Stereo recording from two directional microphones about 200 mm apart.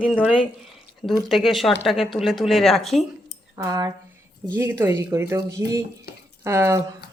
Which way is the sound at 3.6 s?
15° right (ahead or behind).